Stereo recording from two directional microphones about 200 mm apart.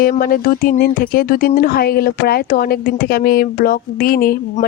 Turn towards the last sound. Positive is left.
turn(degrees=45)  # may be behind; listen again after turning